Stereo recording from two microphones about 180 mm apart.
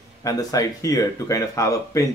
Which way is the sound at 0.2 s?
20° left (ahead or behind).